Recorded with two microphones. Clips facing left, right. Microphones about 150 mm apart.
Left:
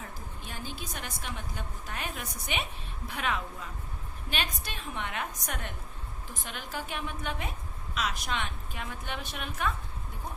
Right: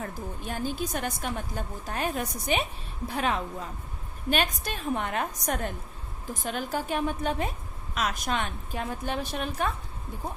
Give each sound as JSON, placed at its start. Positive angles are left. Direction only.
{"t": 0.0, "sound": "a woman's voice", "side_deg": -50}